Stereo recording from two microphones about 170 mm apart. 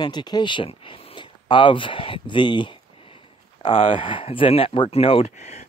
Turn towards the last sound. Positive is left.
turn(degrees=40)  # may be behind; listen again after turning